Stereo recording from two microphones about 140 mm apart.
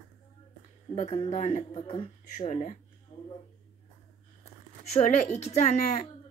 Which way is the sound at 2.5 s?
65° left (ahead or behind).